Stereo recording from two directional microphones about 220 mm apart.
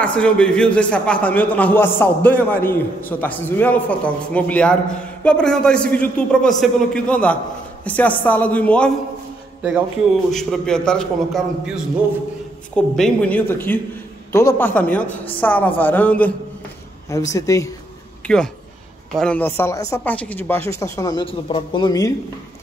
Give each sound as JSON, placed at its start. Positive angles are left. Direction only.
{"t": 0.0, "sound": "a man's voice", "side_deg": 5}
{"t": 10.3, "sound": "a man's voice", "side_deg": 5}
{"t": 15.0, "sound": "a woman's voice", "side_deg": 25}
{"t": 15.4, "sound": "speech", "side_deg": 5}
{"t": 18.2, "sound": "speech", "side_deg": 5}